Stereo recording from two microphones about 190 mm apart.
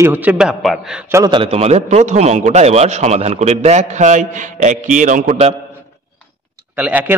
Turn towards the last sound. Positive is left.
turn(degrees=-10)  # may be behind; listen again after turning